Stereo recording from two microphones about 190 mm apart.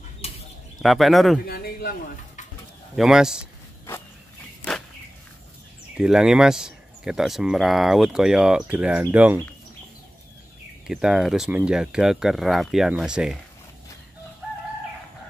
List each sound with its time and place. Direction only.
0.8 s speech: centre (ahead or behind)
1.4 s speech: 55° left (ahead or behind)
3.0 s speech: 5° right (ahead or behind)
5.9 s speech: 5° right (ahead or behind)
10.9 s speech: centre (ahead or behind)